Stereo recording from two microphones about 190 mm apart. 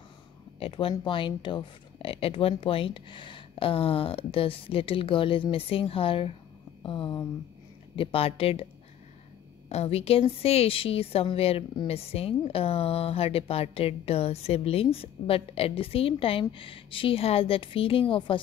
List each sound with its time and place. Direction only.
0.6 s a woman's voice: 30° left (ahead or behind)
9.7 s a woman's voice: 35° left (ahead or behind)